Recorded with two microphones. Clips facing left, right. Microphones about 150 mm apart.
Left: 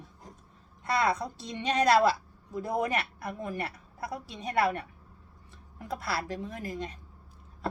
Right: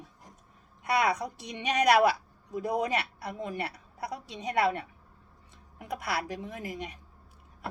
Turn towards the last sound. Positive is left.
turn(degrees=-15)  # may be behind; listen again after turning